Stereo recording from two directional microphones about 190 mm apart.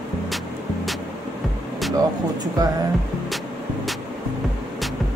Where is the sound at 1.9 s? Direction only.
20° right (ahead or behind).